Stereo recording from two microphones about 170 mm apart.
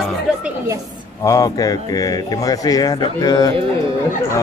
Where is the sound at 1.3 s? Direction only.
20° left (ahead or behind).